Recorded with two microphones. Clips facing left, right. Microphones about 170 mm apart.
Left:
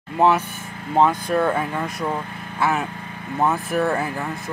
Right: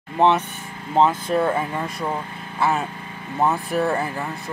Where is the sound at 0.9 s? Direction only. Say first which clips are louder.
Even; 25° right (ahead or behind).